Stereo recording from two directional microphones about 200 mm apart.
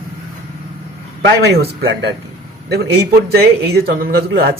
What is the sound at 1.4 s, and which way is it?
Speech, 60° right (ahead or behind).